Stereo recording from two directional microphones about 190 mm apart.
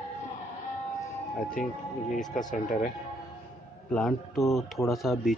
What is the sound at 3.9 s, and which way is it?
Speech, centre (ahead or behind).